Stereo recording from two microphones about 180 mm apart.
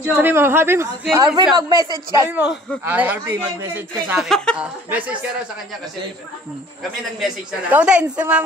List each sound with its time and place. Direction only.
0.0 s a man's voice: 10° right (ahead or behind)
2.8 s a man's voice: 10° right (ahead or behind)
4.2 s a man's voice: centre (ahead or behind)
7.0 s a man's voice: centre (ahead or behind)